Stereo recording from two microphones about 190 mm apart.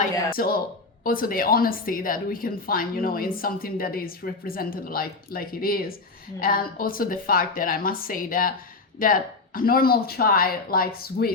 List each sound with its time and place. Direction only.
0.3 s a woman's voice: 50° left (ahead or behind)